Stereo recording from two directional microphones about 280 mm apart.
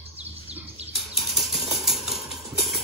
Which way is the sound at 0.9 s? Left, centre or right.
Centre.